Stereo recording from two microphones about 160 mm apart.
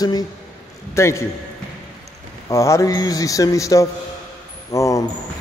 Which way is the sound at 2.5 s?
20° left (ahead or behind).